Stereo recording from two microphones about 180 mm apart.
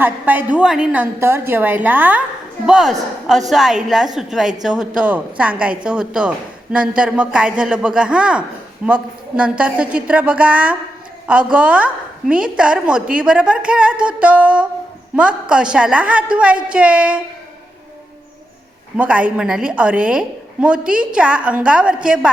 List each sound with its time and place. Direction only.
0.0 s a woman's voice: 10° right (ahead or behind)
18.9 s a woman's voice: 5° right (ahead or behind)